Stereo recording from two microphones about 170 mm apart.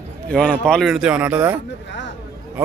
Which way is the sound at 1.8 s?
90° left.